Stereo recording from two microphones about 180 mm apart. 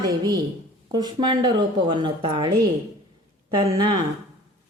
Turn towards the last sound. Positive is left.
turn(degrees=-25)  # may be behind; listen again after turning